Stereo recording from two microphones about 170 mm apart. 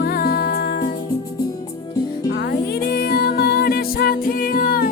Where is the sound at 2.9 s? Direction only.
65° left (ahead or behind).